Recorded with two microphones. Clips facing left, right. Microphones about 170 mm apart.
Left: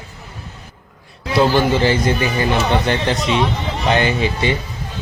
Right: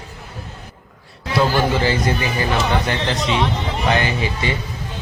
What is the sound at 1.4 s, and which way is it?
Speech, 25° left (ahead or behind).